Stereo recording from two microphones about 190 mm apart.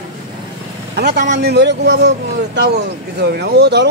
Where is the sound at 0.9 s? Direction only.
60° right (ahead or behind).